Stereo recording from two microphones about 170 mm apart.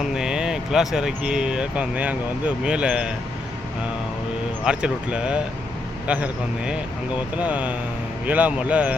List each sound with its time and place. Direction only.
0.0 s speech: 5° right (ahead or behind)
4.6 s a man's voice: 5° right (ahead or behind)